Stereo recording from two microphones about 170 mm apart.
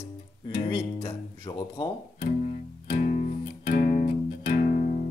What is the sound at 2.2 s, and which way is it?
Music, 50° left (ahead or behind).